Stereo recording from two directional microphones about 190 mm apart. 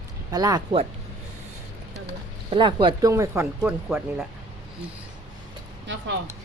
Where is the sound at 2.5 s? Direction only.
25° right (ahead or behind).